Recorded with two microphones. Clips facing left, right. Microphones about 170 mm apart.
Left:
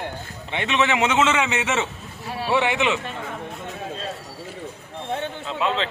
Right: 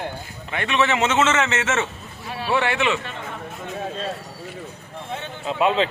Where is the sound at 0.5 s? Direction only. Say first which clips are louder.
Even; 20° left (ahead or behind).